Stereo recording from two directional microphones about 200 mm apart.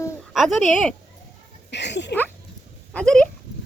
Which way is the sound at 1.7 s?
60° left (ahead or behind).